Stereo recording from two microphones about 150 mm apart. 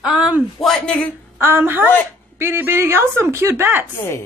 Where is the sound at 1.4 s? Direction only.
15° right (ahead or behind).